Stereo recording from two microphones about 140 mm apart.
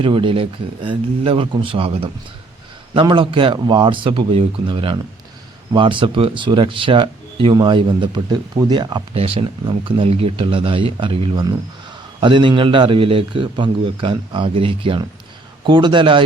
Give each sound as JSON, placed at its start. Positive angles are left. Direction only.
{"t": 0.0, "sound": "speech", "side_deg": -40}